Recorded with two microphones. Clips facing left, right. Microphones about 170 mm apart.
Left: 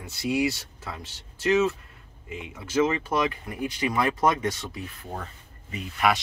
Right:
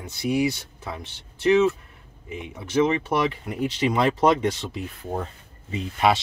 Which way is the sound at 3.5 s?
25° right (ahead or behind).